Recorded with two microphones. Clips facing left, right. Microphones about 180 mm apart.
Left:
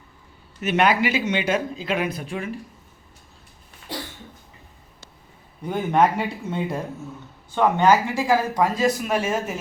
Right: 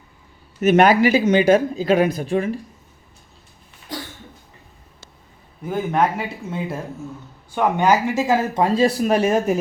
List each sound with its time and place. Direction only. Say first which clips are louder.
0.6 s speech: right 6 dB; 45° right (ahead or behind)
5.6 s speech: even; centre (ahead or behind); by 9.6 s 40° right (ahead or behind)